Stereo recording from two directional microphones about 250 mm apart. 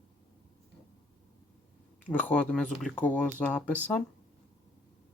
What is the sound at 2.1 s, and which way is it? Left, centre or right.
Speech, centre.